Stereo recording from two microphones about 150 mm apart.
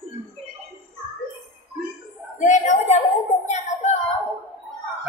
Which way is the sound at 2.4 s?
50° left (ahead or behind).